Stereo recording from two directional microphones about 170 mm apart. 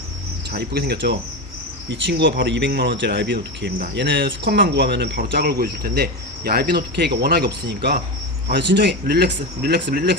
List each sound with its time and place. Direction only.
0.5 s speech: 70° right (ahead or behind)
1.9 s speech: 90° right; by 6.7 s 65° right (ahead or behind)
6.9 s speech: 80° right
8.4 s speech: 85° right